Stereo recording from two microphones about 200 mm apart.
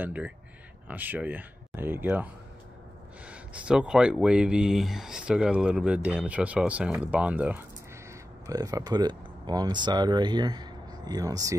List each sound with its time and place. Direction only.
0.0 s speech: 5° right (ahead or behind)
3.3 s speech: 5° right (ahead or behind)